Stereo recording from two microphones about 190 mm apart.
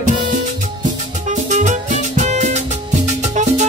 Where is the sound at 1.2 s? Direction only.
40° right (ahead or behind).